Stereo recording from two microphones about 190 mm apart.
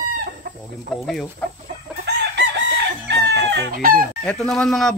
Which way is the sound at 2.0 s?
65° right (ahead or behind).